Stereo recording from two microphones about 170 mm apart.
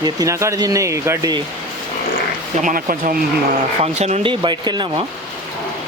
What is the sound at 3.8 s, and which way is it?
Speech, 40° right (ahead or behind).